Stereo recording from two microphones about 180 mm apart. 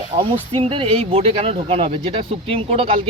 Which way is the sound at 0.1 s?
35° right (ahead or behind).